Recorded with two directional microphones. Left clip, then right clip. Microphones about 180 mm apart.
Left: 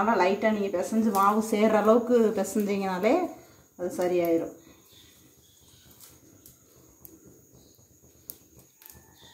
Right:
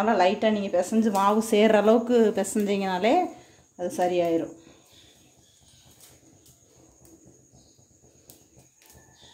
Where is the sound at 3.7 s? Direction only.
40° right (ahead or behind).